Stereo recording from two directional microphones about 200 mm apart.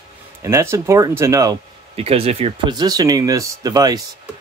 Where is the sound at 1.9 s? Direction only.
30° right (ahead or behind).